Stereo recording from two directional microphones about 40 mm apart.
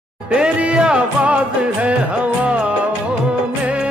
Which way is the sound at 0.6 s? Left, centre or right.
Right.